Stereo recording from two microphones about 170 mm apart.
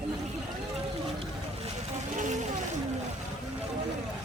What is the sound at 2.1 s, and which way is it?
Music, 45° right (ahead or behind).